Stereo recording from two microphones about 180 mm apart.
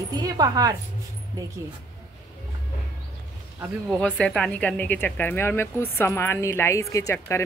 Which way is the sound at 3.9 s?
5° left (ahead or behind).